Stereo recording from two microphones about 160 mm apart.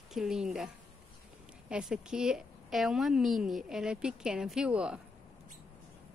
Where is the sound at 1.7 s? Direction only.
5° right (ahead or behind).